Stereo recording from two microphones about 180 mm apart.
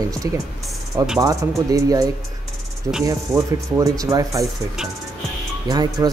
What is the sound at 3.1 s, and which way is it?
Speech, 15° right (ahead or behind).